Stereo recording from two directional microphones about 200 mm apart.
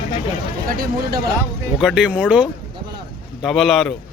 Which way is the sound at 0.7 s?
45° right (ahead or behind).